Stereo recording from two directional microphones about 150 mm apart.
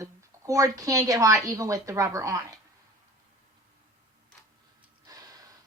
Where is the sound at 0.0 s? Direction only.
20° right (ahead or behind).